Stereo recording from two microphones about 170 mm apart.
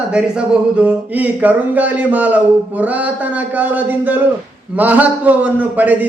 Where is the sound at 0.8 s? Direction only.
10° right (ahead or behind).